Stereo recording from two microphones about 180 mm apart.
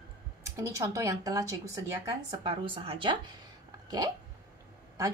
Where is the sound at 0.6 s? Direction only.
15° right (ahead or behind).